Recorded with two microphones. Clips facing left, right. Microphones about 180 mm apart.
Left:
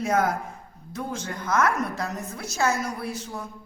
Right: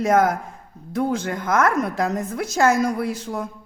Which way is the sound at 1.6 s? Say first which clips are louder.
Right 6 dB; 90° right.